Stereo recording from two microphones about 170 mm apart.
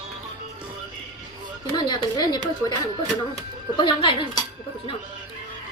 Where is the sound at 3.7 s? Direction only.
30° left (ahead or behind).